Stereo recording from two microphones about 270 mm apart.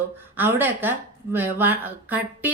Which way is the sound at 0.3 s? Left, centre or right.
Centre.